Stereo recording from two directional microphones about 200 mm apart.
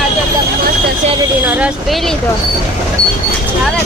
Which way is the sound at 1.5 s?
5° right (ahead or behind).